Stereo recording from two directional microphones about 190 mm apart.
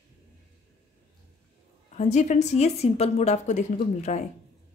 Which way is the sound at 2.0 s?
35° left (ahead or behind).